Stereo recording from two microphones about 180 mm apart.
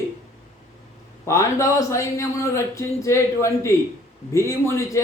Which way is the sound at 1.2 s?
15° left (ahead or behind).